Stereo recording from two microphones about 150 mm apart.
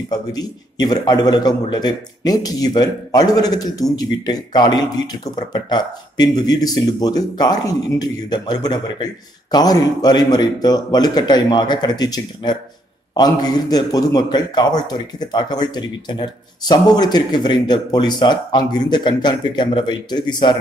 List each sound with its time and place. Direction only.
0.1 s a man's voice: 25° left (ahead or behind)